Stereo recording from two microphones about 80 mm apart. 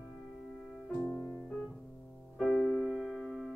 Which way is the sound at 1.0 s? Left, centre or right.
Left.